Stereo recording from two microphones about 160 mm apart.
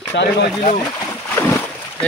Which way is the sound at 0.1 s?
90° left.